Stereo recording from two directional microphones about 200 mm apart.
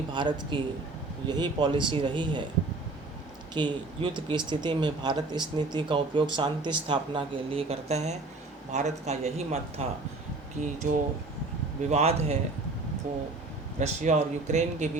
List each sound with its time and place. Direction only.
0.1 s speech: 25° right (ahead or behind)
3.5 s a man's voice: 20° right (ahead or behind)
10.8 s a man's voice: 40° right (ahead or behind)
13.7 s a man's voice: 35° right (ahead or behind)